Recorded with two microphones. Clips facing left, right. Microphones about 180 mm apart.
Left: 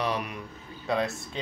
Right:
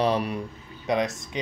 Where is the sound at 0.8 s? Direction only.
15° right (ahead or behind).